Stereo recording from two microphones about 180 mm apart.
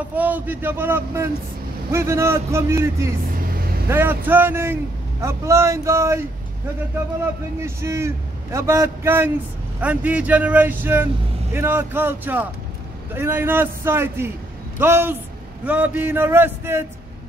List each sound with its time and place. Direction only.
0.1 s a man's voice: 10° right (ahead or behind)
7.6 s a man's voice: 15° right (ahead or behind)